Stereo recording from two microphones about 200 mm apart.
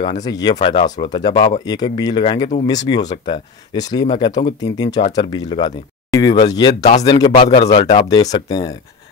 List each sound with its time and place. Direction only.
0.0 s speech: 20° left (ahead or behind)